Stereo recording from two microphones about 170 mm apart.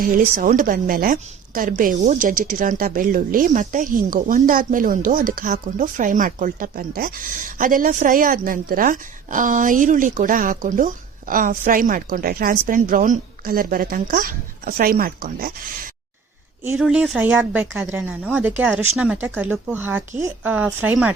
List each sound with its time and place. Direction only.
0.0 s a woman's voice: 55° right (ahead or behind)
16.7 s speech: 5° right (ahead or behind)